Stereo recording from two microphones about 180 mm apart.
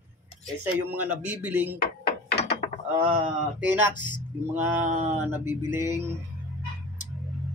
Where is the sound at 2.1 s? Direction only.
65° left (ahead or behind).